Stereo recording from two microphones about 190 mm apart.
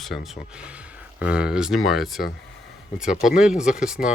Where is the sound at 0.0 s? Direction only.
Centre (ahead or behind).